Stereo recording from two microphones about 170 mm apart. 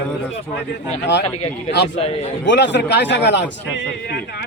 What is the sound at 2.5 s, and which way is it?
A man's voice, 90° left.